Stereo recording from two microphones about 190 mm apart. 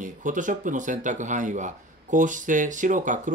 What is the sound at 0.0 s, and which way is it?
Speech, 40° right (ahead or behind).